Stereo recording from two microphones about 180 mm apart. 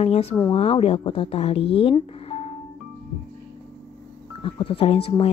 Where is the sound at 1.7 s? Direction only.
30° left (ahead or behind).